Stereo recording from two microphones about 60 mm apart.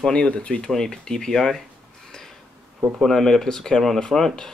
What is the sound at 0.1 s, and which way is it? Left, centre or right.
Speech, left.